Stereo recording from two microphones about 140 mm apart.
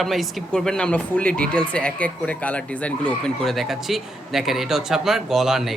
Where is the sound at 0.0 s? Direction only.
Centre (ahead or behind).